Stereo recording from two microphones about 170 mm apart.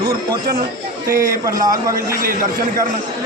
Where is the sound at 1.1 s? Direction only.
55° right (ahead or behind).